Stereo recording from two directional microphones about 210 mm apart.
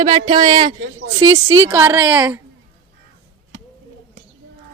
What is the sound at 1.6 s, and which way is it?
Speech, 10° right (ahead or behind).